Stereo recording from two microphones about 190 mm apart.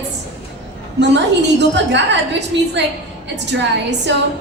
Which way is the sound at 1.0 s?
65° right (ahead or behind).